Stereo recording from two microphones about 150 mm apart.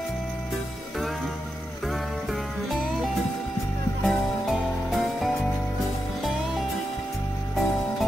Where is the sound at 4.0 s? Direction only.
Centre (ahead or behind).